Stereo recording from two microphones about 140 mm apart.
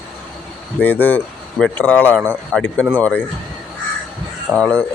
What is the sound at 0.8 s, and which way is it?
Speech, 15° left (ahead or behind).